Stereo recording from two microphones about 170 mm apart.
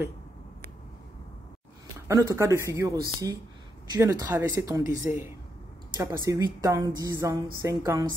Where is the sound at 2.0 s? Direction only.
15° right (ahead or behind).